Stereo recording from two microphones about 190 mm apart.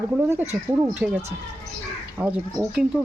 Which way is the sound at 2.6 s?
15° right (ahead or behind).